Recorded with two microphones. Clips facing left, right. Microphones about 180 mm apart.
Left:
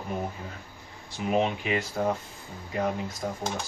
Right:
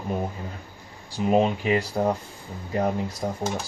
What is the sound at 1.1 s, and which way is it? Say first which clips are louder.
Speech: right 5 dB; 35° right (ahead or behind).